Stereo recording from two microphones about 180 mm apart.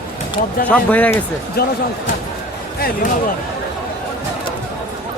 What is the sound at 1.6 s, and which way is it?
Speech, 60° left (ahead or behind).